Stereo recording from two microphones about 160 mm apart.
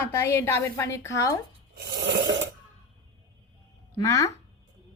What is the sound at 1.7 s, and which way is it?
Filing, 90° right.